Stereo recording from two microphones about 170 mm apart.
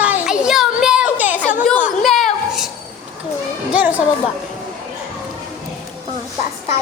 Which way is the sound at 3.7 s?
5° right (ahead or behind).